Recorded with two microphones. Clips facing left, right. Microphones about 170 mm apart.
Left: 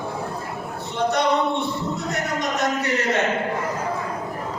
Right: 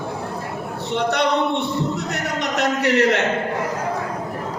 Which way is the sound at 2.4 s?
70° right (ahead or behind).